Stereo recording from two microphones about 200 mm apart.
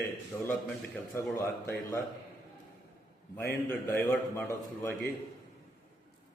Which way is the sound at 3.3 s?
10° left (ahead or behind).